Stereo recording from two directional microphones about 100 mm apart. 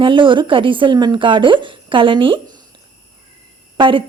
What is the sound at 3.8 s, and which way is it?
Speech, 60° right (ahead or behind).